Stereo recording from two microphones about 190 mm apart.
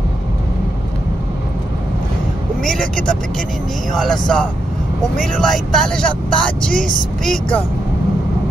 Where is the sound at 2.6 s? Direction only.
Centre (ahead or behind).